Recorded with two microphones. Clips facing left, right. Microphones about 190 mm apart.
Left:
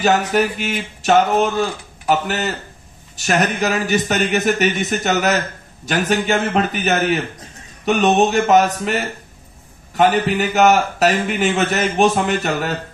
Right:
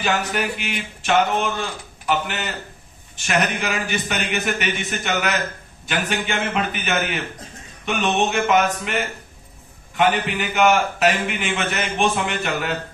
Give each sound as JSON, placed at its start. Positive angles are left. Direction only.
{"t": 0.0, "sound": "a man's voice", "side_deg": 40}